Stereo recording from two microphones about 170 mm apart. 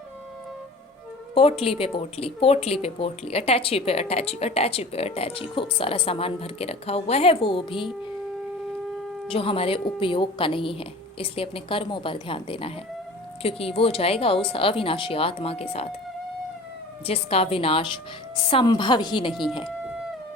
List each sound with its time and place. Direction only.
1.3 s a woman's voice: 35° left (ahead or behind)
9.2 s speech: 30° left (ahead or behind)
17.1 s a woman's voice: 35° left (ahead or behind)
19.3 s speech: centre (ahead or behind)